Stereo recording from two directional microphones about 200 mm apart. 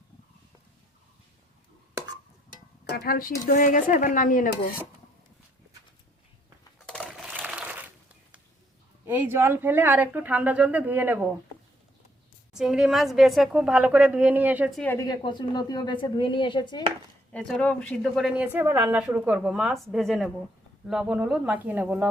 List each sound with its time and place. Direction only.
2.9 s speech: 50° left (ahead or behind)
6.8 s crushing: 5° left (ahead or behind)
9.0 s speech: 10° right (ahead or behind)
12.5 s speech: centre (ahead or behind)
14.8 s a woman's voice: 10° left (ahead or behind)
17.3 s speech: 5° left (ahead or behind)